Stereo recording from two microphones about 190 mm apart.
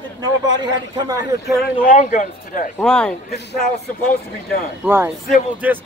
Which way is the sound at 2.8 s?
5° left (ahead or behind).